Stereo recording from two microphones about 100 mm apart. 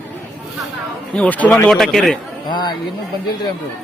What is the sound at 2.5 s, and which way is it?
Speech, 50° left (ahead or behind).